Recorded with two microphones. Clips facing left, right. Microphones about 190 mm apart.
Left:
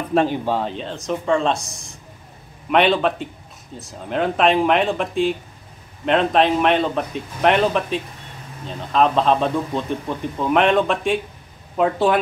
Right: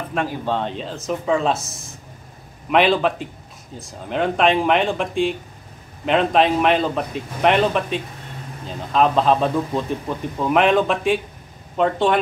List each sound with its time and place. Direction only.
0.1 s speech: 30° left (ahead or behind)
0.5 s speech: 5° left (ahead or behind)